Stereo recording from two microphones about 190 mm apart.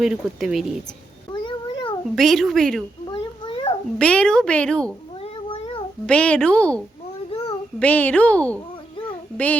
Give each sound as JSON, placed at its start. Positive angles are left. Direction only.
{"t": 0.0, "sound": "a woman's voice", "side_deg": -5}
{"t": 1.3, "sound": "cat", "side_deg": 25}
{"t": 2.1, "sound": "a woman's voice", "side_deg": 0}
{"t": 3.1, "sound": "a sound", "side_deg": 25}
{"t": 3.9, "sound": "a woman's voice", "side_deg": 5}
{"t": 5.2, "sound": "cat", "side_deg": 35}
{"t": 6.1, "sound": "a woman's voice", "side_deg": 5}
{"t": 7.3, "sound": "a sound", "side_deg": 30}
{"t": 7.8, "sound": "a woman's voice", "side_deg": 10}
{"t": 9.0, "sound": "a sound", "side_deg": 10}